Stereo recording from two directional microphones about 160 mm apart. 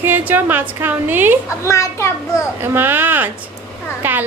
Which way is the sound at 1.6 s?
20° left (ahead or behind).